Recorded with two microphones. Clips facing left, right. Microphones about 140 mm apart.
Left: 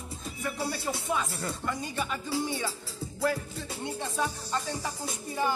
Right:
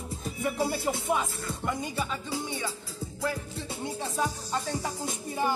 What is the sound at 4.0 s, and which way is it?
Speech, 10° right (ahead or behind).